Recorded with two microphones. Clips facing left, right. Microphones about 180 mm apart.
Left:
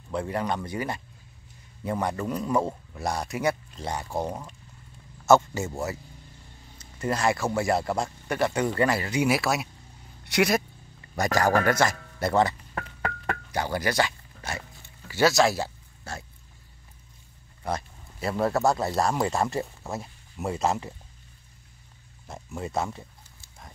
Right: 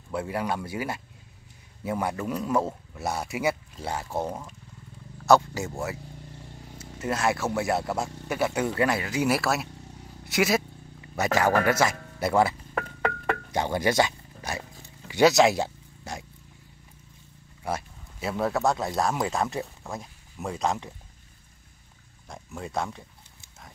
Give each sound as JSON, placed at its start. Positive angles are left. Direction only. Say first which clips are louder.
{"t": 0.1, "sound": "a man's voice", "louder": "left 1 dB", "side_deg": -5}
{"t": 5.6, "sound": "a man's voice", "louder": "left 1 dB", "side_deg": 0}
{"t": 13.5, "sound": "speech", "louder": "right 2 dB", "side_deg": -20}
{"t": 17.6, "sound": "a sound", "louder": "even", "side_deg": -5}
{"t": 18.3, "sound": "a man's voice", "louder": "left 2 dB", "side_deg": 0}
{"t": 22.3, "sound": "speech", "louder": "left 2 dB", "side_deg": 0}